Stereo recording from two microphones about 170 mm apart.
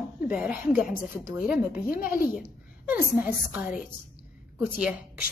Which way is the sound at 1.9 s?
55° left (ahead or behind).